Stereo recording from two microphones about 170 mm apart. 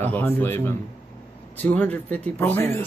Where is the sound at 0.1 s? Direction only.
10° left (ahead or behind).